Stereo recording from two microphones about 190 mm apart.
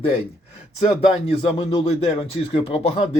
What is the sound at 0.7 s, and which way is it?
Speech, 35° left (ahead or behind).